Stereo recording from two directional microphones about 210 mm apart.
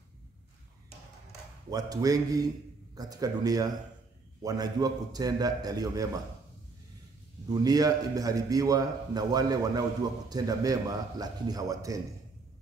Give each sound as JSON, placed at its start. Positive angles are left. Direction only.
{"t": 1.7, "sound": "a man's voice", "side_deg": -15}
{"t": 7.4, "sound": "a man's voice", "side_deg": -15}